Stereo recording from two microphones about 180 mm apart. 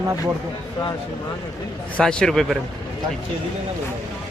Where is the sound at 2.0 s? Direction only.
5° left (ahead or behind).